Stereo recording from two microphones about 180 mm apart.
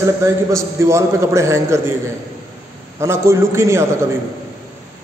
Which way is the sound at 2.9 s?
15° right (ahead or behind).